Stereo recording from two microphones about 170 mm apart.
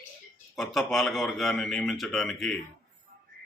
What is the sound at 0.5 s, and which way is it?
A man's voice, centre (ahead or behind).